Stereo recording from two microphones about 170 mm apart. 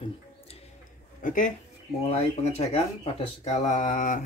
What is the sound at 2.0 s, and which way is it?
Speech, 40° left (ahead or behind).